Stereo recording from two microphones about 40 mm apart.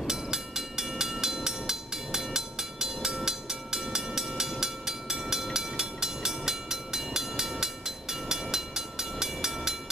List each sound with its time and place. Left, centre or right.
0.0 s train: centre